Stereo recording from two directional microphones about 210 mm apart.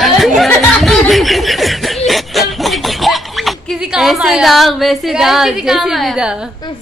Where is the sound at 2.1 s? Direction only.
Centre (ahead or behind).